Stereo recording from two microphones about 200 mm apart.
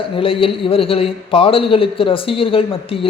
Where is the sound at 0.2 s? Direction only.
25° left (ahead or behind).